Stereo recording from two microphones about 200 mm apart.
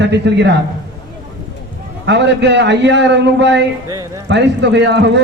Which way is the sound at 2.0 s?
60° right (ahead or behind).